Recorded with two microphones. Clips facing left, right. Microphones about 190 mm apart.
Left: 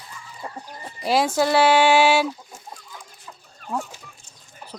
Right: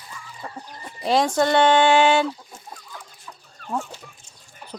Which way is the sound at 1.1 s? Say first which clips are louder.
Right 1 dB; 5° left (ahead or behind).